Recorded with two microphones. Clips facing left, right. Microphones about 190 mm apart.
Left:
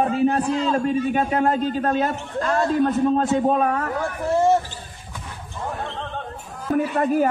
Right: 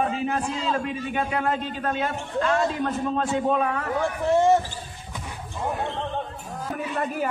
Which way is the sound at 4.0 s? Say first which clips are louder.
Right 1 dB; centre (ahead or behind).